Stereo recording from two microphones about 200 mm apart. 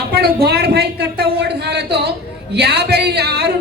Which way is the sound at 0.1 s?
55° right (ahead or behind).